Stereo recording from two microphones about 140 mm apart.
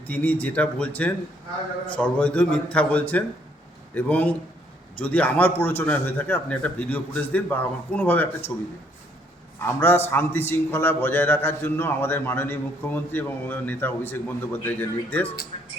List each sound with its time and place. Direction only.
0.1 s a man's voice: 10° left (ahead or behind)
9.6 s a man's voice: 15° left (ahead or behind)